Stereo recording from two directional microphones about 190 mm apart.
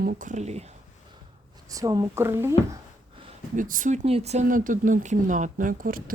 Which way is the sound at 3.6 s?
45° right (ahead or behind).